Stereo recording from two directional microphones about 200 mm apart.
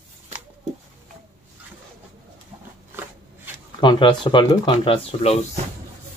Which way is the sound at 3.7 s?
25° left (ahead or behind).